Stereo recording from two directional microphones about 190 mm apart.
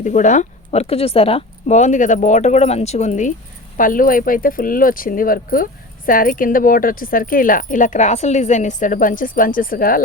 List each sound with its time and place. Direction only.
0.0 s speech: 40° left (ahead or behind)